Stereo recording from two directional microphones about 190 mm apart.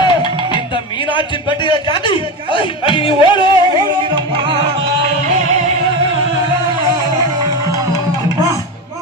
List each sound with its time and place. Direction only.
0.0 s music: 25° left (ahead or behind)
1.1 s a man's voice: 25° left (ahead or behind)
4.1 s music: 25° right (ahead or behind)